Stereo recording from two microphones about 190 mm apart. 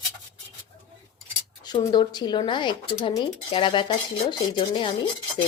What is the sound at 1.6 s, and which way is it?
Speech, 20° left (ahead or behind).